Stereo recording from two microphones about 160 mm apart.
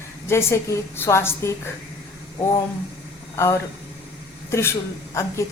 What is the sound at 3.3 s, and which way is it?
A man's voice, 15° left (ahead or behind).